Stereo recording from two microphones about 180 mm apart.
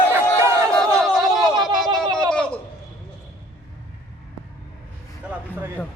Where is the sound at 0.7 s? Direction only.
Centre (ahead or behind).